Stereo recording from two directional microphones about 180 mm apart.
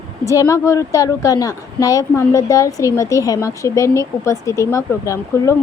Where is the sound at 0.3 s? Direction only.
15° left (ahead or behind).